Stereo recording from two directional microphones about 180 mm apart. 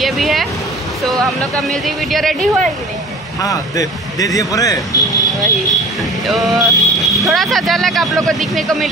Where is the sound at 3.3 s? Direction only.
20° left (ahead or behind).